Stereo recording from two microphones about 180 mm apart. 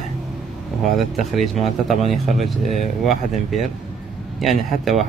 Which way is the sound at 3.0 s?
Centre (ahead or behind).